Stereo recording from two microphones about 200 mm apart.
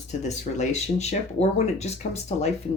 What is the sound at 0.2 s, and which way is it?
Speech, 35° left (ahead or behind).